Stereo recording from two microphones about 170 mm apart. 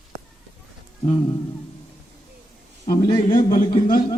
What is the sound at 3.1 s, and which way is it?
Speech, 25° left (ahead or behind).